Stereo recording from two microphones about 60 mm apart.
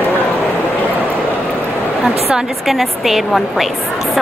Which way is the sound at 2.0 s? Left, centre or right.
Centre.